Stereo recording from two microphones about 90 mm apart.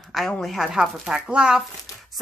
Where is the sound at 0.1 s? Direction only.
5° left (ahead or behind).